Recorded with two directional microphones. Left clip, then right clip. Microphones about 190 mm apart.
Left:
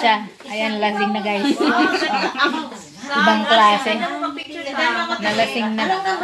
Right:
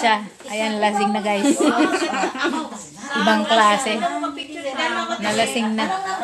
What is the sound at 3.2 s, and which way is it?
Speech, 5° right (ahead or behind).